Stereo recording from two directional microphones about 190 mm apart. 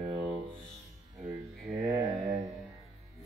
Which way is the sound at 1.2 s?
10° right (ahead or behind).